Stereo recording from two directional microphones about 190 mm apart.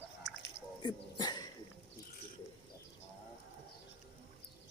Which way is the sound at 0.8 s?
25° left (ahead or behind).